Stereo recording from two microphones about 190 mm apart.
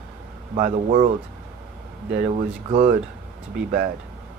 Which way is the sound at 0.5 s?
30° right (ahead or behind).